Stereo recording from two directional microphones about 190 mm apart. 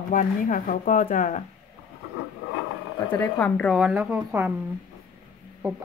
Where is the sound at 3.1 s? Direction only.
10° left (ahead or behind); by 4.5 s 10° right (ahead or behind).